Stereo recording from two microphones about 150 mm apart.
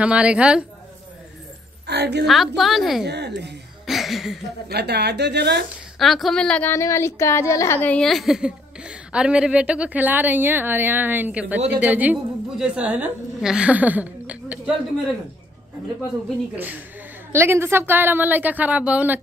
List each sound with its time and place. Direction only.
0.0 s a woman's voice: 10° right (ahead or behind)
1.9 s a woman's voice: 90° right
2.2 s a woman's voice: centre (ahead or behind)
3.8 s a sound: centre (ahead or behind)
4.6 s speech: 90° right
5.9 s a woman's voice: centre (ahead or behind)
16.5 s a woman's voice: 10° right (ahead or behind)